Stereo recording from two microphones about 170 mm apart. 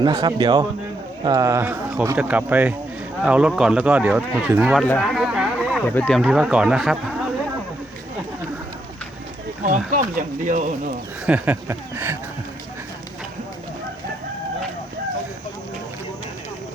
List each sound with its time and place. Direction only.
0.0 s a man's voice: 25° right (ahead or behind)
4.8 s a sound: 5° left (ahead or behind)
5.9 s speech: 5° left (ahead or behind)
9.9 s speech: 50° right (ahead or behind)
11.3 s speech: 10° right (ahead or behind)